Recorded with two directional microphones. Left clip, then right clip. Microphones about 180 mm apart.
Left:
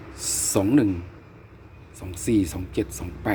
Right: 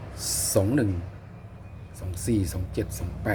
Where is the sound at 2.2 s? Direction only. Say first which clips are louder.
Left 5 dB; 20° left (ahead or behind).